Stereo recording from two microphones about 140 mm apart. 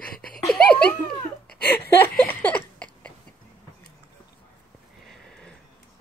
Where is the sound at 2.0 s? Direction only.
15° left (ahead or behind).